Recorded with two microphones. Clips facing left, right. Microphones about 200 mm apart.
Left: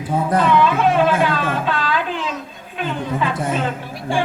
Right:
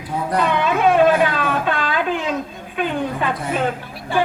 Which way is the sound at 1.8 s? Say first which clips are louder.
Right 1 dB; 50° right (ahead or behind).